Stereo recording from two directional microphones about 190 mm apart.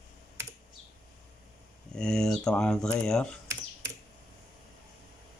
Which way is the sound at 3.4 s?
15° right (ahead or behind).